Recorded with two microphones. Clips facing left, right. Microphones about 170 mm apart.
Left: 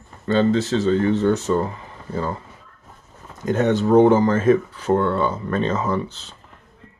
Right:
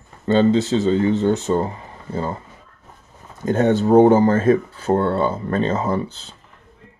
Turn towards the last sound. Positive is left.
turn(degrees=-35)  # may be behind; listen again after turning